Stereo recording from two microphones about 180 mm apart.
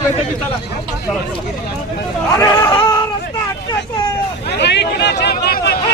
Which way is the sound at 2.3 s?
20° left (ahead or behind).